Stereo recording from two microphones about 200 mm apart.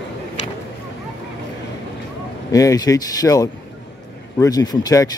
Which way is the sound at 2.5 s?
15° left (ahead or behind).